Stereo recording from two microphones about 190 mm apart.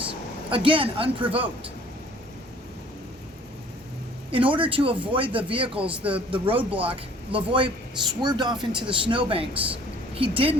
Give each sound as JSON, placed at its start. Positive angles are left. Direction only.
{"t": 0.1, "sound": "speech", "side_deg": -25}
{"t": 4.3, "sound": "speech", "side_deg": -25}
{"t": 5.8, "sound": "a man's voice", "side_deg": -5}
{"t": 6.3, "sound": "speech", "side_deg": -25}
{"t": 6.6, "sound": "a man's voice", "side_deg": -10}
{"t": 6.9, "sound": "speech", "side_deg": -30}